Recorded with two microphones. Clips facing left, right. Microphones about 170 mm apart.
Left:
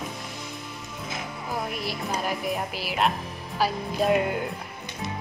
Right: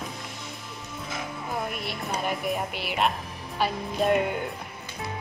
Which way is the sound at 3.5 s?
Centre (ahead or behind).